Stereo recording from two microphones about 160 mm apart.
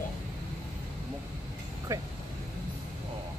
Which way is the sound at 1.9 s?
20° right (ahead or behind).